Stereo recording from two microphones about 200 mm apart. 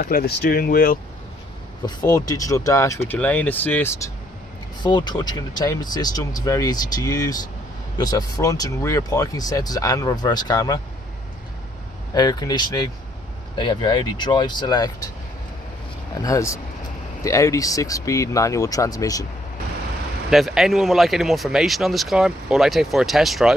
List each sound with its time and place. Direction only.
0.0 s speech: 50° left (ahead or behind)
1.9 s speech: 20° left (ahead or behind)
12.1 s speech: 20° left (ahead or behind)
16.2 s speech: 15° left (ahead or behind)
20.2 s speech: centre (ahead or behind)